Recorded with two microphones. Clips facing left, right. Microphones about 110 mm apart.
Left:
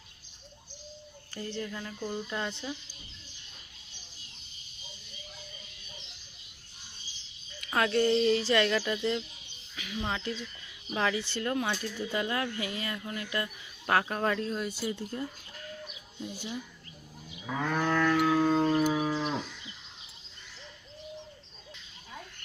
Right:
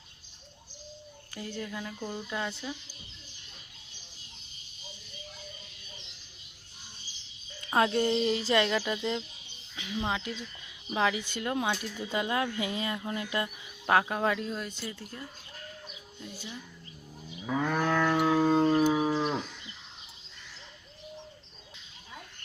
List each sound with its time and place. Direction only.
1.3 s speech: 10° right (ahead or behind)
7.6 s speech: 25° right (ahead or behind)
9.7 s speech: 25° right (ahead or behind)
10.1 s speech: 10° right (ahead or behind); by 14.8 s 5° left (ahead or behind)
15.1 s speech: 25° left (ahead or behind)
16.2 s speech: 15° left (ahead or behind)
17.4 s moo: 5° right (ahead or behind)
18.1 s music: 20° right (ahead or behind)